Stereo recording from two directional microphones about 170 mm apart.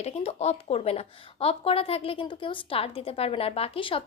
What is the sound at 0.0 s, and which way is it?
A woman's voice, 40° left (ahead or behind).